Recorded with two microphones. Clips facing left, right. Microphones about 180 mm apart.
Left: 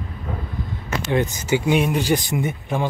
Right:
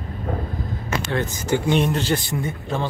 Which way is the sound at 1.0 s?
15° left (ahead or behind).